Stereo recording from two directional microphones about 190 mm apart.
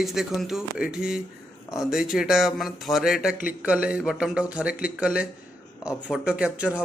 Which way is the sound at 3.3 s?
50° left (ahead or behind).